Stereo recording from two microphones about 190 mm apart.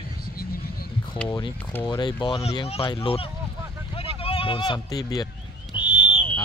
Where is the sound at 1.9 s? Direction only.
25° left (ahead or behind).